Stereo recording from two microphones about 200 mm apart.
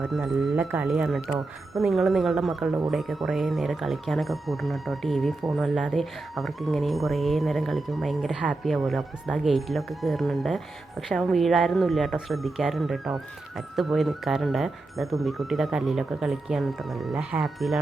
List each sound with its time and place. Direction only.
0.0 s speech: centre (ahead or behind)